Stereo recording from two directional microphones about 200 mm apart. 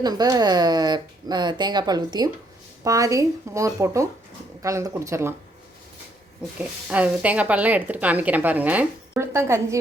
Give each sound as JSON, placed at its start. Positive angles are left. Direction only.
{"t": 0.0, "sound": "a woman's voice", "side_deg": -20}
{"t": 6.6, "sound": "a woman's voice", "side_deg": -5}